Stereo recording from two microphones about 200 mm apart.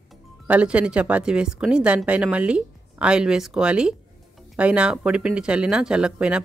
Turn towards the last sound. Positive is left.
turn(degrees=-5)  # may be behind; listen again after turning